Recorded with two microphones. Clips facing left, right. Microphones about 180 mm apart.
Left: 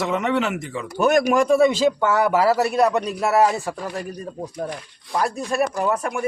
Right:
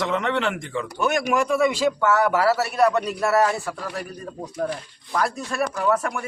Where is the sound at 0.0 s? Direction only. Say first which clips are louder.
Left 2 dB; 5° left (ahead or behind).